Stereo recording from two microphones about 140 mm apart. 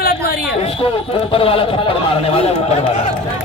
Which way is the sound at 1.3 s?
40° left (ahead or behind).